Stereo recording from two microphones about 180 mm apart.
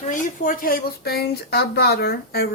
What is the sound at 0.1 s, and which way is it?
Speech, 50° left (ahead or behind).